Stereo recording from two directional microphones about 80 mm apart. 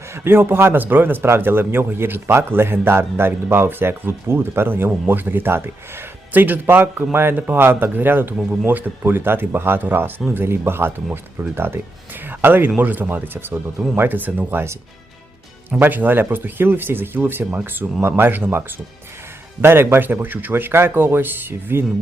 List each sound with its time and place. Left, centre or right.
0.3 s speech: right
15.8 s speech: right
19.6 s speech: right